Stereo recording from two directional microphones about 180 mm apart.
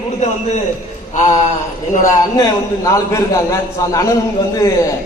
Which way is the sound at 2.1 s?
20° left (ahead or behind).